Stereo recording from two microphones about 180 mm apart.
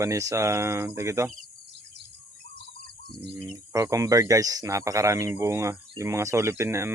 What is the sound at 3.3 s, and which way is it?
Speech, 15° right (ahead or behind).